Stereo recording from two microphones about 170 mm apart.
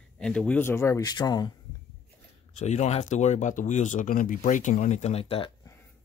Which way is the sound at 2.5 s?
40° left (ahead or behind).